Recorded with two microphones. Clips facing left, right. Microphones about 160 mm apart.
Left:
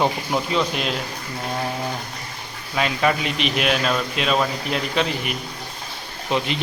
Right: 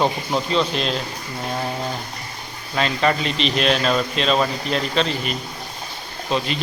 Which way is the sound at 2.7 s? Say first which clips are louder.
Right 1 dB; 10° left (ahead or behind).